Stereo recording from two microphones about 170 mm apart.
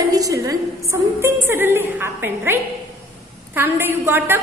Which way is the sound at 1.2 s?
15° right (ahead or behind).